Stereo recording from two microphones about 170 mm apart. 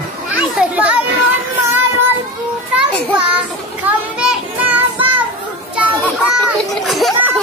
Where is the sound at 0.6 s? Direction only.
10° right (ahead or behind).